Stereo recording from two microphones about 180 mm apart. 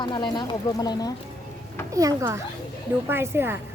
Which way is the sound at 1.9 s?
20° right (ahead or behind).